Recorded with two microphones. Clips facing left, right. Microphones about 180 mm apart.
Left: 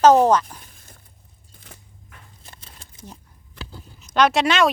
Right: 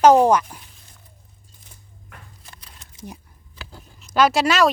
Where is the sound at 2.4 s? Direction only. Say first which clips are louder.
Left 1 dB; 25° left (ahead or behind).